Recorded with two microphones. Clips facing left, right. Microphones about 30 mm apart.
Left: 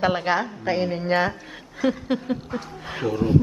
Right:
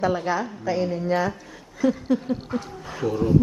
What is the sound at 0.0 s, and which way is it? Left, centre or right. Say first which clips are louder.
Speech: left 2 dB; left.